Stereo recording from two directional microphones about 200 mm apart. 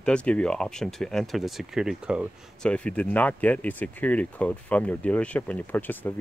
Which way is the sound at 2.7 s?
5° left (ahead or behind).